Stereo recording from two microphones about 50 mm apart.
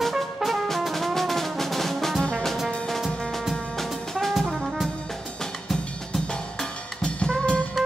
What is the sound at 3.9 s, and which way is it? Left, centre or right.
Brass instrument, centre.